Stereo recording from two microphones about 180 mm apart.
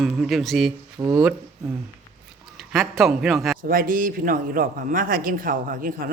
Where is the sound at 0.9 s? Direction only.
20° right (ahead or behind).